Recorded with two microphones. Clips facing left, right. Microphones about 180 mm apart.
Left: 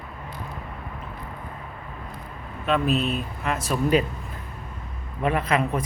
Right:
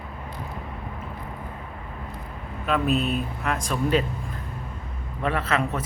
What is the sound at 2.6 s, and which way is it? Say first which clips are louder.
Speech: left 1 dB; centre (ahead or behind).